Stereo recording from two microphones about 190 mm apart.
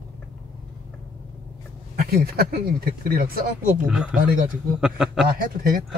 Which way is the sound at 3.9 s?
5° right (ahead or behind).